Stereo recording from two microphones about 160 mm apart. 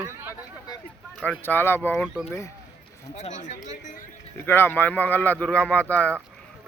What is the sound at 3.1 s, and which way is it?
Speech, 50° left (ahead or behind).